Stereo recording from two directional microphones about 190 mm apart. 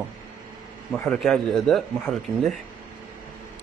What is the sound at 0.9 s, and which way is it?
Speech, centre (ahead or behind).